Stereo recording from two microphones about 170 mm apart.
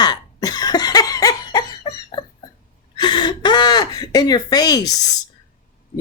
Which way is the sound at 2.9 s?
25° left (ahead or behind).